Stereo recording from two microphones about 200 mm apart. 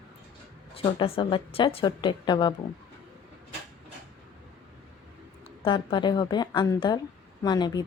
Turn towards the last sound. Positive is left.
turn(degrees=20)  # may be behind; listen again after turning